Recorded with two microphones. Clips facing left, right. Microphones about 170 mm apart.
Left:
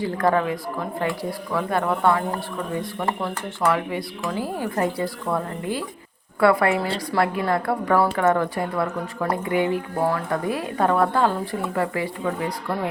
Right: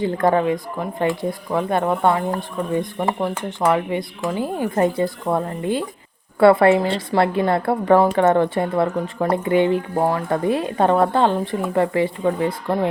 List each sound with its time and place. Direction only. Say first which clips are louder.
0.0 s speech: right 3 dB; 25° right (ahead or behind)